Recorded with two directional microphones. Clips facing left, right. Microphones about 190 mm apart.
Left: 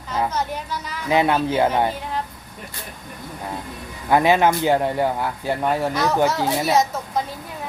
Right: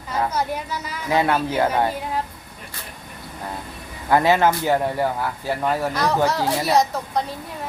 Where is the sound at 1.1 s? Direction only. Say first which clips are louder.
Left 2 dB; 20° left (ahead or behind).